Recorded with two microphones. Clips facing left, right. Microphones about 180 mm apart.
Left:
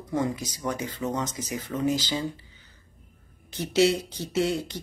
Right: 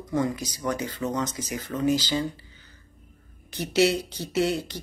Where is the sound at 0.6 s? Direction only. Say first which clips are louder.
Right 1 dB; 20° left (ahead or behind).